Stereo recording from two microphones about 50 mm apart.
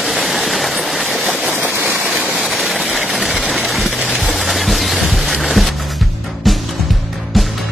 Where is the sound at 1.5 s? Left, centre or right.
Right.